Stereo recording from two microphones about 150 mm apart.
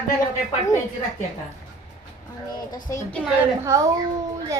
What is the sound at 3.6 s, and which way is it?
Speech, 20° right (ahead or behind).